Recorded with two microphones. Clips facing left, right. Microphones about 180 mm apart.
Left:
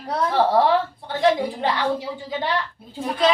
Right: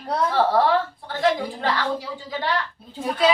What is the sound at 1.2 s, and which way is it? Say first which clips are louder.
A woman's voice: left 3 dB; 20° left (ahead or behind).